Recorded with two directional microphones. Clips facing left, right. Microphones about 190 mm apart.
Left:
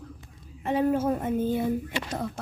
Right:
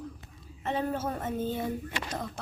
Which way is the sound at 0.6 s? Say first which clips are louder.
Left 7 dB; 10° left (ahead or behind).